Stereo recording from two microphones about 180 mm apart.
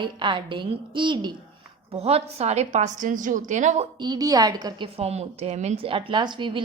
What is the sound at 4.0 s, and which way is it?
A woman's voice, 20° right (ahead or behind).